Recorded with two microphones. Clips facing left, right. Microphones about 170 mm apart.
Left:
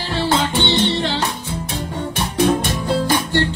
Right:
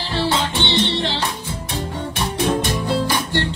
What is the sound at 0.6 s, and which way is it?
Music, 45° left (ahead or behind).